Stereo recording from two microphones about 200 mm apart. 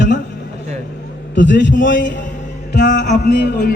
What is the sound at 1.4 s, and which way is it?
Speech, 65° left (ahead or behind).